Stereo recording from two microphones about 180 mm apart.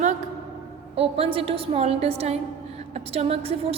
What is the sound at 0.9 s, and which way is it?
A woman's voice, 30° right (ahead or behind).